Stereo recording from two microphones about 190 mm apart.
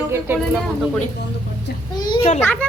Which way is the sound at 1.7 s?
55° left (ahead or behind).